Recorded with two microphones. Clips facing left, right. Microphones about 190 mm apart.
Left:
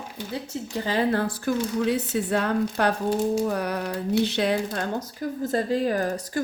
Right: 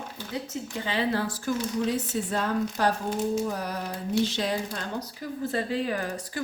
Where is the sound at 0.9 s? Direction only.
50° left (ahead or behind).